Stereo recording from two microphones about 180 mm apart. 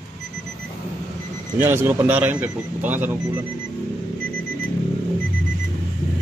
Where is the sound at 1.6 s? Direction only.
10° right (ahead or behind).